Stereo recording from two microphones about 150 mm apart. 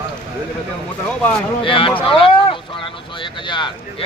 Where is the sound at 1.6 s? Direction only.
35° left (ahead or behind).